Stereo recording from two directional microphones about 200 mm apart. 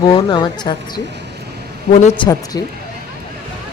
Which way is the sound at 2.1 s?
20° left (ahead or behind).